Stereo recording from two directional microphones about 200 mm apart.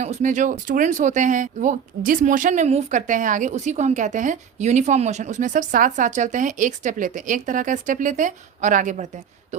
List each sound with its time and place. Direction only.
0.0 s speech: 35° right (ahead or behind)